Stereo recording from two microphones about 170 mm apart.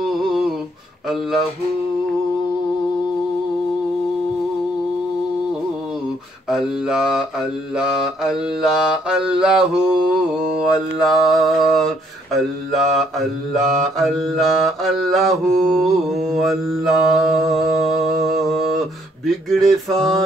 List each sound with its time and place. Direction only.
0.0 s humming: centre (ahead or behind)
6.5 s mantra: 5° right (ahead or behind)